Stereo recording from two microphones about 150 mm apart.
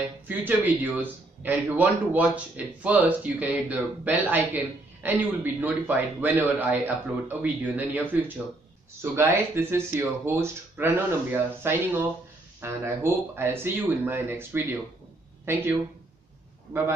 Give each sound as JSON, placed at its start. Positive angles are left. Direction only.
{"t": 0.3, "sound": "a man's voice", "side_deg": -10}